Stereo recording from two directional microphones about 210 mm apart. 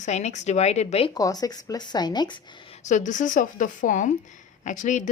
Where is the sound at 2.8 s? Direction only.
35° left (ahead or behind).